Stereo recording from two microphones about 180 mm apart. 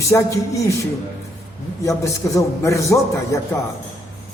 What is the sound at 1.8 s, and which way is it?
A man's voice, 15° left (ahead or behind).